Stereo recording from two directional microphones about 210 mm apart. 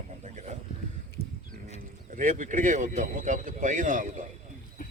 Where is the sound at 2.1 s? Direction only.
40° right (ahead or behind).